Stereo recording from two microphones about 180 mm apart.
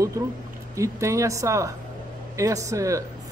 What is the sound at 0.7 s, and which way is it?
Speech, 15° right (ahead or behind).